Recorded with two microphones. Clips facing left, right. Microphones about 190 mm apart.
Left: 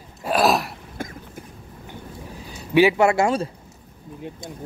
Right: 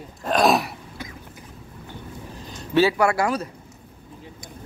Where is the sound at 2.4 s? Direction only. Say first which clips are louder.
Left 2 dB; 10° left (ahead or behind).